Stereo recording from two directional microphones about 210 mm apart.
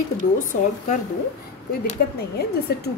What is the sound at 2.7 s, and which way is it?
Speech, 50° left (ahead or behind).